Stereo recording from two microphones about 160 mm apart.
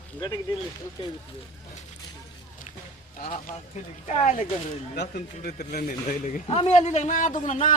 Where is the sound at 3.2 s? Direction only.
55° left (ahead or behind).